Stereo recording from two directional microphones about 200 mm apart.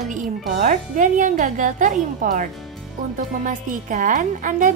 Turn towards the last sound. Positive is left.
turn(degrees=-40)  # may be behind; listen again after turning